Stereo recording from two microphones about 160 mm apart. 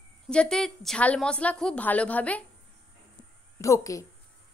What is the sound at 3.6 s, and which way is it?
Speech, 20° left (ahead or behind).